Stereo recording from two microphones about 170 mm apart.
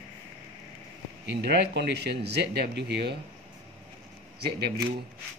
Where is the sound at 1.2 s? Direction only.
90° right.